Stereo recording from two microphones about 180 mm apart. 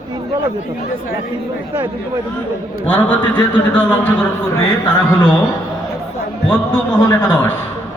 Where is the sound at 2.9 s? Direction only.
10° left (ahead or behind).